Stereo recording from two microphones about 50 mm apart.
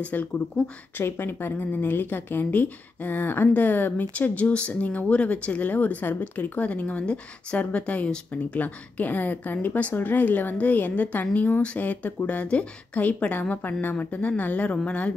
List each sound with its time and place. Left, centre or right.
0.0 s speech: left
1.0 s speech: left